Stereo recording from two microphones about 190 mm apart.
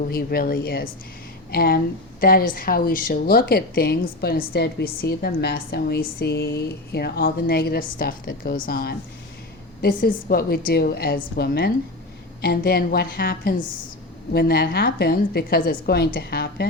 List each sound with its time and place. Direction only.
0.1 s a woman's voice: 55° left (ahead or behind)